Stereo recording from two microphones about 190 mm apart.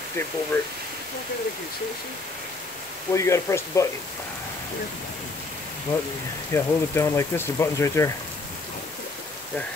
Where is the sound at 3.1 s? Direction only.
15° left (ahead or behind).